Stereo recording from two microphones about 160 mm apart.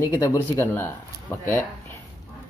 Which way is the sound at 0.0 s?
20° left (ahead or behind).